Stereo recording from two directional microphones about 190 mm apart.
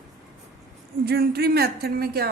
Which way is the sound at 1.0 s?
55° right (ahead or behind).